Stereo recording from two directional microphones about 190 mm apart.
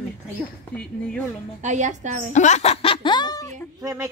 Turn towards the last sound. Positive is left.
turn(degrees=-15)  # may be behind; listen again after turning